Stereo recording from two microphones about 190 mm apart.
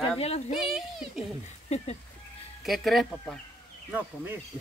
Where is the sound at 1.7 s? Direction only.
35° left (ahead or behind).